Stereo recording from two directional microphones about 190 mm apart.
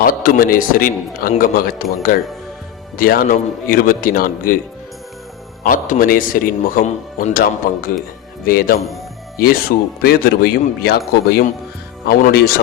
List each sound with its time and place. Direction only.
0.0 s a man's voice: 50° left (ahead or behind)
5.6 s a man's voice: 45° left (ahead or behind)